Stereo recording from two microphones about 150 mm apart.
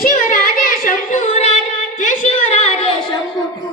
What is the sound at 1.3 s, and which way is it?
Child singing, 45° left (ahead or behind).